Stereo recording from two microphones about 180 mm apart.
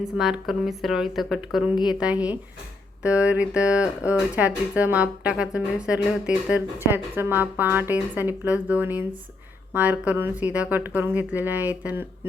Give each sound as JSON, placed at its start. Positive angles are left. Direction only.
{"t": 0.2, "sound": "speech", "side_deg": 0}
{"t": 1.7, "sound": "a woman's voice", "side_deg": 25}
{"t": 2.0, "sound": "speech", "side_deg": -5}